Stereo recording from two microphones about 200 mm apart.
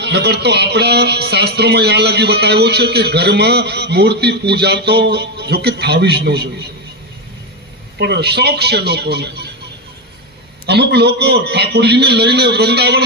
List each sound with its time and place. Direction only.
0.0 s speech: 55° right (ahead or behind)
8.0 s speech: 55° right (ahead or behind)
10.7 s speech: 55° right (ahead or behind)